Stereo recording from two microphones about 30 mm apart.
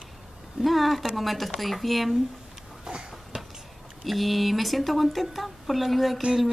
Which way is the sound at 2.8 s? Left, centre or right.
Right.